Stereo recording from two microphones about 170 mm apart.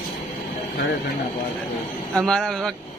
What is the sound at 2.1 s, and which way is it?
Speech, 5° left (ahead or behind).